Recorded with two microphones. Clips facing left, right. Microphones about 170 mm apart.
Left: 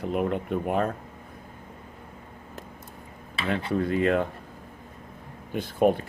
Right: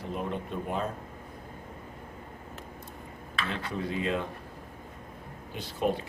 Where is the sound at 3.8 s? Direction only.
55° left (ahead or behind).